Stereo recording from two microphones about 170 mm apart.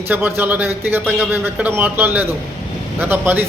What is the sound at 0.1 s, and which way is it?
A man's voice, 10° right (ahead or behind).